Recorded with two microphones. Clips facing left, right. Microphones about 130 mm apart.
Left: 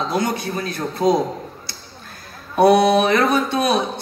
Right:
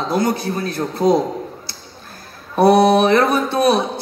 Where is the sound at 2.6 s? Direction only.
30° right (ahead or behind).